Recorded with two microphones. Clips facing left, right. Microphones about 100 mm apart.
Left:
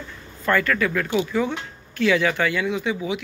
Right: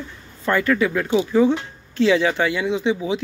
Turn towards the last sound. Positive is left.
turn(degrees=-25)  # may be behind; listen again after turning